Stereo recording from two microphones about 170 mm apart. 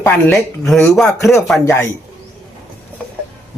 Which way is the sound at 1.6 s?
15° left (ahead or behind).